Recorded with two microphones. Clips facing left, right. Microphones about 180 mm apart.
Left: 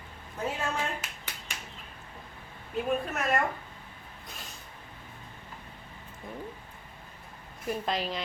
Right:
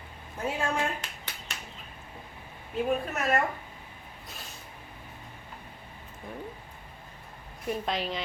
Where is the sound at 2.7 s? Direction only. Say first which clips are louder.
Right 1 dB; centre (ahead or behind).